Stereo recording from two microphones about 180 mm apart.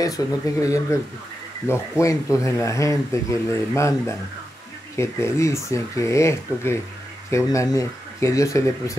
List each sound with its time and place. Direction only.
0.0 s speech: 20° left (ahead or behind)